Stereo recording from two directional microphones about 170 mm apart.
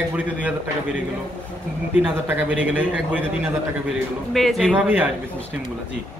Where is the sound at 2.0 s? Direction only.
10° right (ahead or behind).